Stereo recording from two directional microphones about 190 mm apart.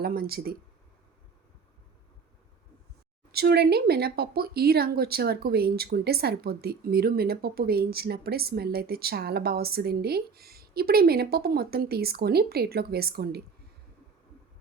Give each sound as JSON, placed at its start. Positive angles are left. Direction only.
{"t": 0.0, "sound": "speech", "side_deg": -50}
{"t": 3.3, "sound": "speech", "side_deg": -55}